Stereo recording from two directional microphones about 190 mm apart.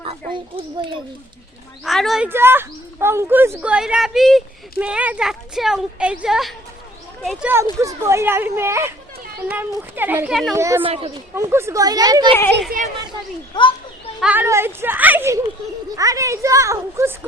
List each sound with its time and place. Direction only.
0.0 s a child's voice: 30° right (ahead or behind)
1.8 s speech: centre (ahead or behind)
7.5 s speech: 15° right (ahead or behind)
10.5 s speech: 15° right (ahead or behind)
10.8 s speech: 30° right (ahead or behind)
11.3 s speech: 15° right (ahead or behind)
13.5 s a child's voice: 25° left (ahead or behind)
14.2 s speech: 10° right (ahead or behind)